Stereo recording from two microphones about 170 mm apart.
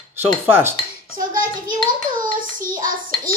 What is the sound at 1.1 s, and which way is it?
Hands, 55° right (ahead or behind).